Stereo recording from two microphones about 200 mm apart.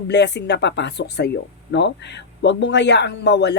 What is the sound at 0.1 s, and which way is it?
Speech, 60° left (ahead or behind).